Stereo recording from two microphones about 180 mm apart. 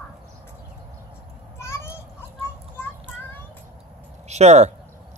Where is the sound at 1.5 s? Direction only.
15° left (ahead or behind).